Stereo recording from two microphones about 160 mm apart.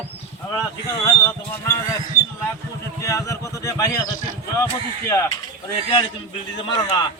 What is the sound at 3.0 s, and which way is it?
Speech, 20° left (ahead or behind).